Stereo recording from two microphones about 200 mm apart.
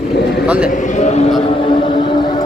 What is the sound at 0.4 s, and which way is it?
Speech, 5° right (ahead or behind).